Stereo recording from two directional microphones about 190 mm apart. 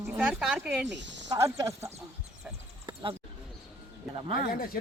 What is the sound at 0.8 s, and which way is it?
Speech, 70° right (ahead or behind).